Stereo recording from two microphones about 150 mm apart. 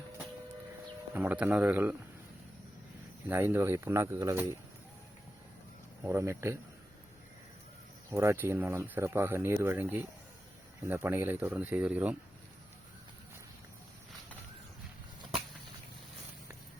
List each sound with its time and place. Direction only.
1.1 s speech: 10° right (ahead or behind)
3.2 s speech: 15° right (ahead or behind)
6.0 s speech: 15° right (ahead or behind)
8.1 s speech: 20° right (ahead or behind)
15.2 s a sound: 35° right (ahead or behind)